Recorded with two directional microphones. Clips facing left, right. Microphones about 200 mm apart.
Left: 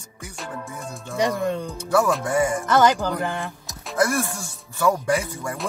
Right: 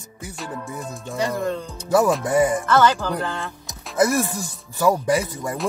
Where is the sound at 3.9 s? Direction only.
20° right (ahead or behind).